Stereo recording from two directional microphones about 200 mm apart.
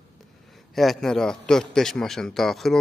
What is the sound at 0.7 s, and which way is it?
A man's voice, centre (ahead or behind).